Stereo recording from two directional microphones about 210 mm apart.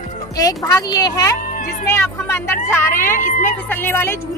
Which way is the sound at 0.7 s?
20° left (ahead or behind).